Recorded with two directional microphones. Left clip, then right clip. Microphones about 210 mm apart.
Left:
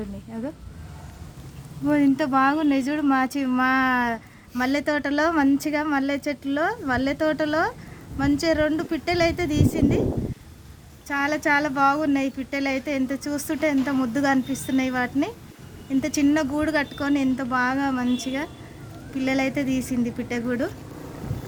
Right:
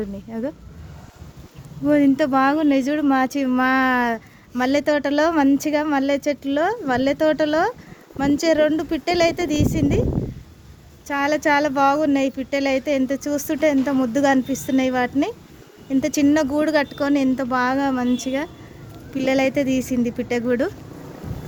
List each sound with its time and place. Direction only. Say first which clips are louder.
0.3 s speech: right 6 dB; 35° right (ahead or behind)
1.9 s speech: right 4 dB; 35° right (ahead or behind)
11.1 s speech: right 3 dB; 40° right (ahead or behind)